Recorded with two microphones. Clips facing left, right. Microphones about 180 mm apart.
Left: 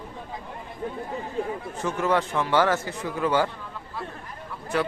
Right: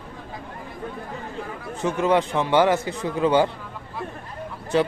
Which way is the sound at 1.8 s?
20° right (ahead or behind).